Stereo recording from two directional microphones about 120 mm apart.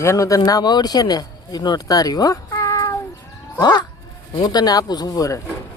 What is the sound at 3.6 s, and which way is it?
Speech, 35° left (ahead or behind).